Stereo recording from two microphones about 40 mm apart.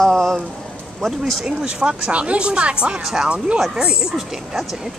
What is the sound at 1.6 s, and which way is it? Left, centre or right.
Speech, right.